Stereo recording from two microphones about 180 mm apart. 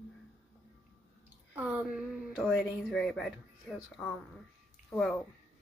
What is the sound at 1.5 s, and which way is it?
Speech, 5° right (ahead or behind).